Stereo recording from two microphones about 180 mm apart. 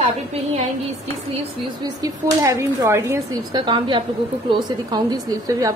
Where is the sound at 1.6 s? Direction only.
20° right (ahead or behind).